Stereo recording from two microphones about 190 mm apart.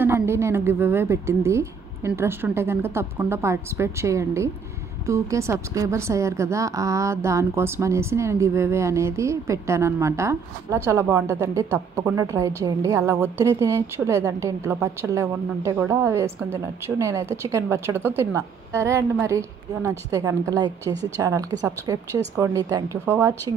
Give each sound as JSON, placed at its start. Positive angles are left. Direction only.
{"t": 0.0, "sound": "a woman's voice", "side_deg": -15}